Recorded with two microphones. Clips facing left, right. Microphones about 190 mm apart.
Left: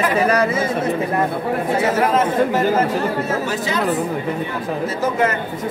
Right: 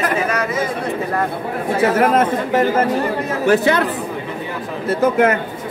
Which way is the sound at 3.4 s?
60° right (ahead or behind).